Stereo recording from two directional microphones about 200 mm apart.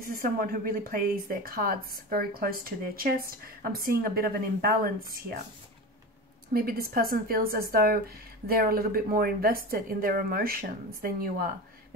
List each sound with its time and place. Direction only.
0.0 s speech: 45° right (ahead or behind)
6.5 s speech: 50° right (ahead or behind)